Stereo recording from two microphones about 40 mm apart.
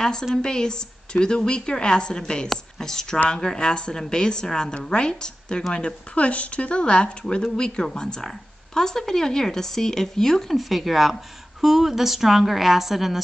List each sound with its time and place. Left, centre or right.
0.4 s a woman's voice: centre